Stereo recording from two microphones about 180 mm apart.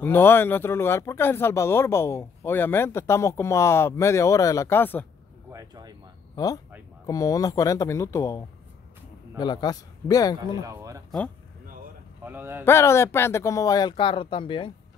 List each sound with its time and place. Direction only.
0.0 s speech: 10° left (ahead or behind)
5.5 s speech: 20° right (ahead or behind)
6.3 s speech: 20° left (ahead or behind)
10.6 s speech: 15° right (ahead or behind)
12.2 s a man's voice: 10° right (ahead or behind)
12.6 s speech: 15° left (ahead or behind)